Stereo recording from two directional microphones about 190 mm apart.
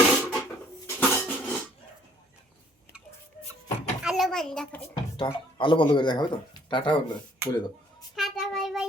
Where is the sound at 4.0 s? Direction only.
Centre (ahead or behind).